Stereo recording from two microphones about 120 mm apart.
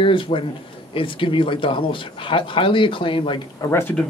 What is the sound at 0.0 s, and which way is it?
Speech, 45° left (ahead or behind).